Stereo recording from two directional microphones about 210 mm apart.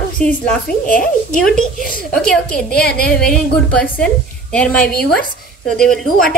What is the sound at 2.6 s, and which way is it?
Speech, 45° left (ahead or behind).